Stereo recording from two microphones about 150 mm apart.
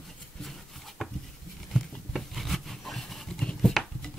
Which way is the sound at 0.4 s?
Centre (ahead or behind).